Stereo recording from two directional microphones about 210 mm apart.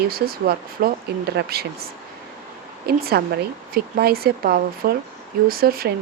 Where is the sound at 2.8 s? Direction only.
45° right (ahead or behind).